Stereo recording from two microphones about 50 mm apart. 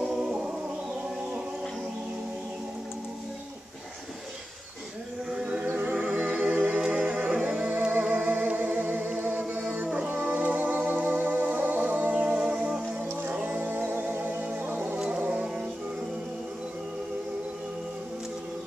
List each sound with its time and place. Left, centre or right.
0.0 s music: centre
5.3 s chant: right
5.7 s music: right
7.7 s music: right
12.5 s music: centre
13.3 s music: right
13.6 s music: right
15.0 s music: centre